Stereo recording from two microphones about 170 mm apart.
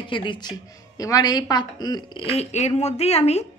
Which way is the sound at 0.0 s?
30° left (ahead or behind).